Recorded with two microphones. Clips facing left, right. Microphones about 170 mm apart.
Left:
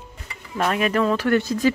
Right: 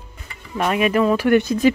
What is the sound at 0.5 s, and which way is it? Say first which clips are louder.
Speech: right 3 dB; 5° right (ahead or behind).